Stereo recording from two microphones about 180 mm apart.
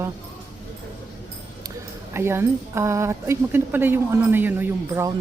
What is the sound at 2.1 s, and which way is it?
A woman's voice, 15° right (ahead or behind).